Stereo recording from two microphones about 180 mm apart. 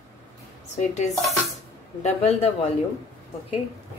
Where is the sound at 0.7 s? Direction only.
40° left (ahead or behind).